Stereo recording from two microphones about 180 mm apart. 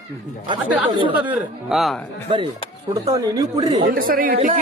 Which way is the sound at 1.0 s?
25° right (ahead or behind).